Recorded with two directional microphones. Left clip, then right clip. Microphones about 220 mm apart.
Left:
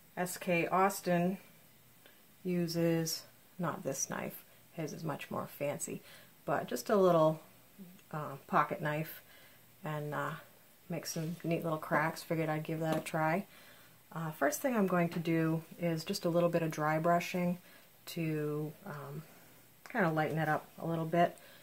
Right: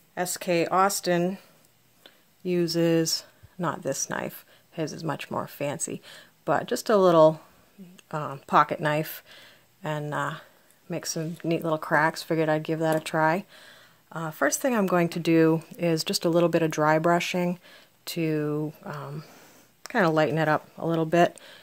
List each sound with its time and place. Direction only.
0.1 s speech: 45° right (ahead or behind)
2.4 s speech: 40° right (ahead or behind)